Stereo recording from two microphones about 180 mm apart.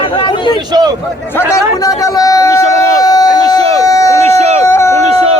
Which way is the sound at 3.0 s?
20° left (ahead or behind).